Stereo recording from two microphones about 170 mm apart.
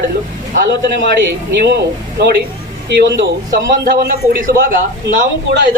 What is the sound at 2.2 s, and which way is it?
Speech, 70° right (ahead or behind).